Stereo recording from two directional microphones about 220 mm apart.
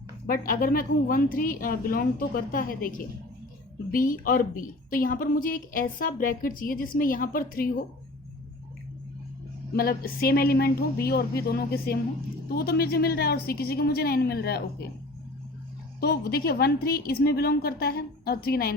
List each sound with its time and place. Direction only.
0.3 s a woman's voice: 40° left (ahead or behind)
9.7 s a woman's voice: 45° left (ahead or behind)
16.0 s a woman's voice: 45° left (ahead or behind)